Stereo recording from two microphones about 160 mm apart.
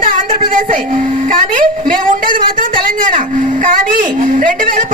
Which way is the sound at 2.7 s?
60° right (ahead or behind).